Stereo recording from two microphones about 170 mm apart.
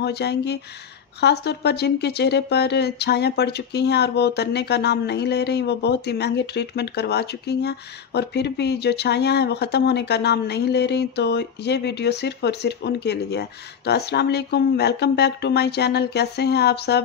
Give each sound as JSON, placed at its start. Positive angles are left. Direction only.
{"t": 0.0, "sound": "speech", "side_deg": 80}